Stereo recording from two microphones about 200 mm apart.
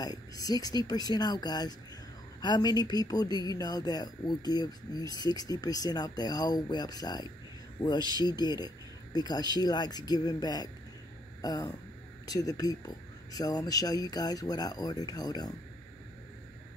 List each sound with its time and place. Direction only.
0.0 s speech: 20° left (ahead or behind)